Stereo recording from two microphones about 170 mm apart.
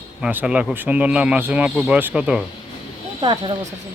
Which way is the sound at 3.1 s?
30° right (ahead or behind).